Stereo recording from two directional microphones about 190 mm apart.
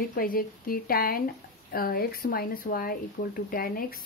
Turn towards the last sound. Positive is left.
turn(degrees=50)  # may be behind; listen again after turning